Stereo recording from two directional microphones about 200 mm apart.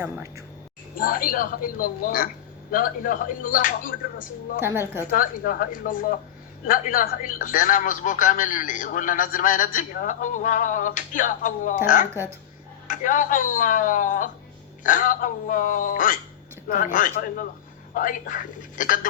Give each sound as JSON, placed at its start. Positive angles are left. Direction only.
{"t": 0.0, "sound": "a woman's voice", "side_deg": -15}
{"t": 0.9, "sound": "speech", "side_deg": 45}
{"t": 4.6, "sound": "a woman's voice", "side_deg": -10}
{"t": 5.1, "sound": "speech", "side_deg": 45}